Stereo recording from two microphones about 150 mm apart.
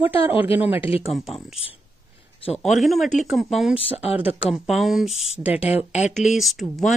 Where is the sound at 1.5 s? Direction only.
40° left (ahead or behind).